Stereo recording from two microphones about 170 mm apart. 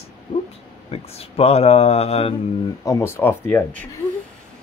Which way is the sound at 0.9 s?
35° left (ahead or behind).